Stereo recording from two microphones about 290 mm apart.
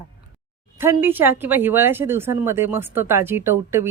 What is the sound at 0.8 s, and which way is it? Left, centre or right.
Speech, centre.